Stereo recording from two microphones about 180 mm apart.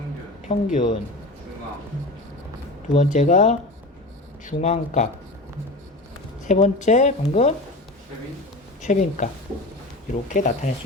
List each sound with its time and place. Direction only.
0.4 s speech: 45° left (ahead or behind)
2.9 s speech: 40° left (ahead or behind)
6.4 s speech: 40° left (ahead or behind)
8.8 s speech: 45° left (ahead or behind)